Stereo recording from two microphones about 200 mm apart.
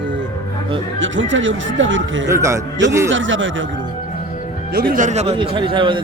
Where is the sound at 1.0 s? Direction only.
70° right (ahead or behind).